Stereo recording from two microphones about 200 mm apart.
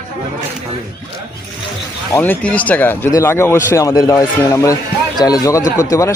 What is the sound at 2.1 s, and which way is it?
Speech, 10° left (ahead or behind).